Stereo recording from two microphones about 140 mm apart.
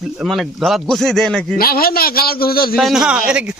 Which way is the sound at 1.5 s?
90° left.